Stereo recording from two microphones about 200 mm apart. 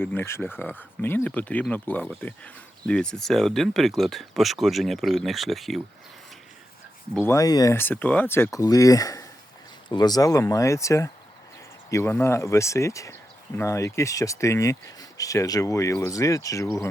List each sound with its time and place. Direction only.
0.0 s speech: 10° left (ahead or behind)
7.2 s speech: 15° left (ahead or behind)